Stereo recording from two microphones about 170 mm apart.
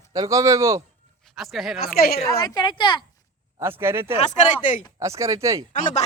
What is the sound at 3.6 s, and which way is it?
Speech, 15° right (ahead or behind).